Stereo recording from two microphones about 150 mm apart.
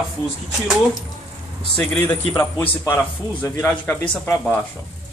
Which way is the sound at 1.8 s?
15° left (ahead or behind).